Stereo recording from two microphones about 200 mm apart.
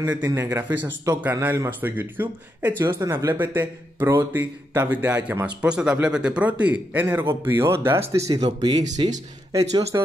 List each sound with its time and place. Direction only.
0.0 s speech: 10° right (ahead or behind)
8.4 s speech: 25° right (ahead or behind)